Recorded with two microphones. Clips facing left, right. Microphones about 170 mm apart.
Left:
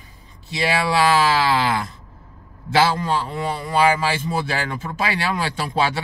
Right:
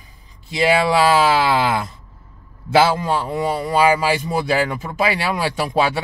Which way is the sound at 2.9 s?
15° right (ahead or behind).